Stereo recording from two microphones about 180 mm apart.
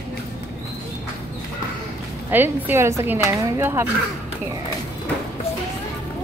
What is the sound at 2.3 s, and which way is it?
Speech, 10° right (ahead or behind).